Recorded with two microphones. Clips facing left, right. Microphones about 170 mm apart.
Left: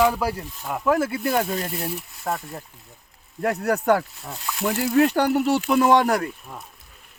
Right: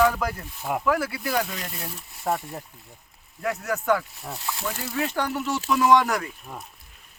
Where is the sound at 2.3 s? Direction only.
5° right (ahead or behind).